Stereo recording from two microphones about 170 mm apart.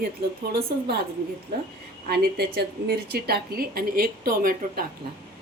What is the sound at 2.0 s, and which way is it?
A woman's voice, 70° right (ahead or behind).